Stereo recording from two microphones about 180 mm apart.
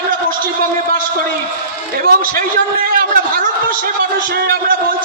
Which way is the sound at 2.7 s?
55° right (ahead or behind).